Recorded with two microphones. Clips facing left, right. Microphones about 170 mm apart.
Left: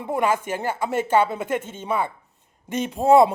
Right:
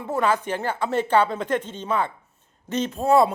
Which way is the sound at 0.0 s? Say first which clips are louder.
Even; 15° left (ahead or behind).